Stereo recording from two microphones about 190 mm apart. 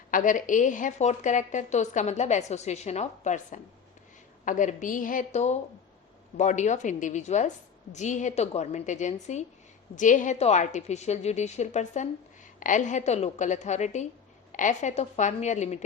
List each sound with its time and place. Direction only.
0.1 s a woman's voice: 45° left (ahead or behind)